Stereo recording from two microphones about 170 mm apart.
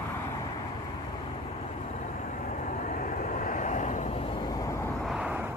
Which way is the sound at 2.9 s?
50° left (ahead or behind).